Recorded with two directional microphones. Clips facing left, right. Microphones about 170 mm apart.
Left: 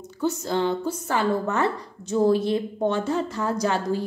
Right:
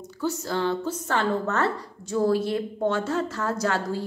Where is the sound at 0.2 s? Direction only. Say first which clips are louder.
Left 2 dB; 20° left (ahead or behind).